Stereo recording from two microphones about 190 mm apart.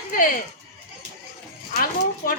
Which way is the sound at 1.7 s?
45° left (ahead or behind).